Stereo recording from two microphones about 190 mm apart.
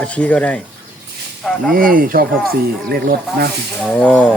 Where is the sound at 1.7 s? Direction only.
50° right (ahead or behind).